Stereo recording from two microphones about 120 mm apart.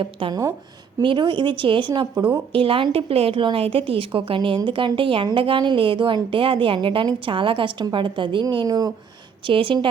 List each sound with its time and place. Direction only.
0.0 s a woman's voice: 50° right (ahead or behind); by 8.9 s 35° right (ahead or behind)
9.5 s a woman's voice: 45° right (ahead or behind)